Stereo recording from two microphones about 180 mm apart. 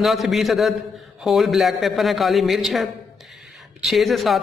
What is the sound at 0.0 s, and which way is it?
A man's voice, centre (ahead or behind).